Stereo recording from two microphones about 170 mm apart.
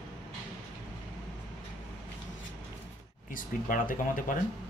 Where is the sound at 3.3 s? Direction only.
55° left (ahead or behind).